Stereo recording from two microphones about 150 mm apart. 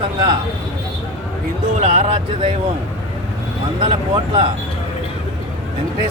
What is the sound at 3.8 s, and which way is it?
Speech, 35° right (ahead or behind).